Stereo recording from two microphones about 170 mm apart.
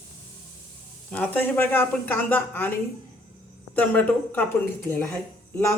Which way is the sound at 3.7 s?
10° left (ahead or behind).